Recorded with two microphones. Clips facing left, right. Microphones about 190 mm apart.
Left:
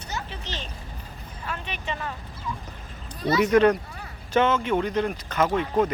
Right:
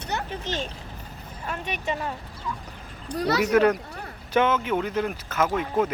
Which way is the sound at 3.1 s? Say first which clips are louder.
Left 1 dB; 70° right (ahead or behind).